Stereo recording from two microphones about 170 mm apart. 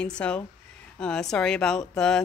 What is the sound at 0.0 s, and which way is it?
Speech, 5° left (ahead or behind).